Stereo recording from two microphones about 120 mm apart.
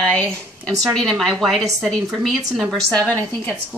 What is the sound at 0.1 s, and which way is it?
Speech, 10° left (ahead or behind).